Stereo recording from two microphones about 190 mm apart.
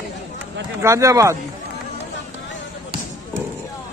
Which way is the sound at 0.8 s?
15° right (ahead or behind).